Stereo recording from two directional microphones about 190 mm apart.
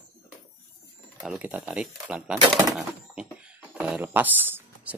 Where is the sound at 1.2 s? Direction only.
5° right (ahead or behind).